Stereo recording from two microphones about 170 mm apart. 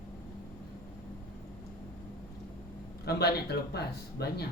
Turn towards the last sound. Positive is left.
turn(degrees=70)  # may be behind; listen again after turning